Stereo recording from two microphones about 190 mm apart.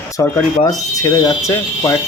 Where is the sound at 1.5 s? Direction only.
15° left (ahead or behind).